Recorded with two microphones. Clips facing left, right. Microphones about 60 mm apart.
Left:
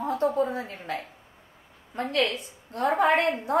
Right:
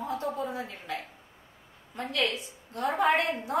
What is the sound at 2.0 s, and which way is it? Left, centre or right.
A woman's voice, left.